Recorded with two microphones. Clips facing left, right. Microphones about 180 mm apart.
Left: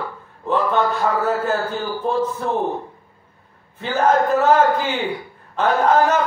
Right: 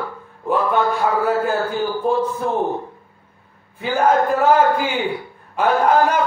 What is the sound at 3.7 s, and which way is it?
Speech, 10° right (ahead or behind).